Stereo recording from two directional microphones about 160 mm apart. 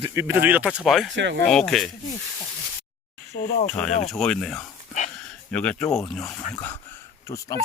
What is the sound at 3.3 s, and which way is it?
Speech, 65° left (ahead or behind).